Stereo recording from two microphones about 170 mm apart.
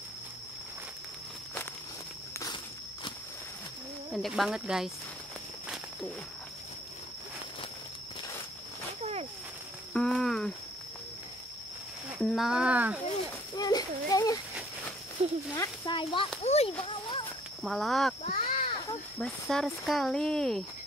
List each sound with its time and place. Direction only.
2.4 s walk: 30° left (ahead or behind)
4.1 s speech: centre (ahead or behind)
9.9 s a sound: 5° left (ahead or behind)
12.2 s speech: centre (ahead or behind)
13.6 s speech: 25° left (ahead or behind)
15.2 s speech: 40° right (ahead or behind)
15.5 s speech: 15° left (ahead or behind)
15.9 s a child's voice: 30° left (ahead or behind)
16.8 s a sound: 30° left (ahead or behind)
17.6 s speech: centre (ahead or behind)
18.2 s a sound: 35° left (ahead or behind)
19.1 s speech: 5° left (ahead or behind)